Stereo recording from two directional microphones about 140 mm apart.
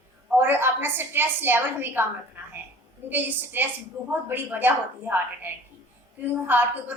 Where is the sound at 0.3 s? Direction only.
15° right (ahead or behind).